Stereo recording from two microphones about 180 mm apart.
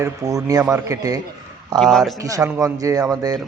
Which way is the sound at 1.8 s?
Centre (ahead or behind).